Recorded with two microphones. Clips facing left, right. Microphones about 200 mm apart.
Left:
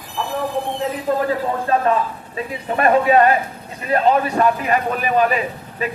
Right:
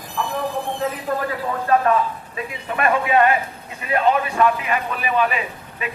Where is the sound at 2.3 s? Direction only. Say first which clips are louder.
Left 5 dB; 35° left (ahead or behind).